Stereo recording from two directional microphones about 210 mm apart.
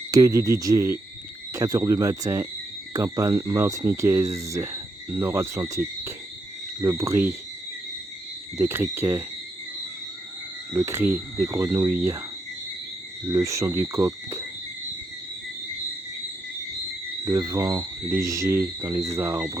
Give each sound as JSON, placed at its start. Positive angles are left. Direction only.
{"t": 0.1, "sound": "speech", "side_deg": -15}
{"t": 8.5, "sound": "speech", "side_deg": -10}
{"t": 10.8, "sound": "speech", "side_deg": -10}
{"t": 13.2, "sound": "speech", "side_deg": -15}
{"t": 17.2, "sound": "speech", "side_deg": -15}